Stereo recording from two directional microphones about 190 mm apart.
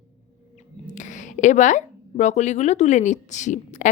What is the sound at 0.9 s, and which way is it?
A woman's voice, 40° left (ahead or behind).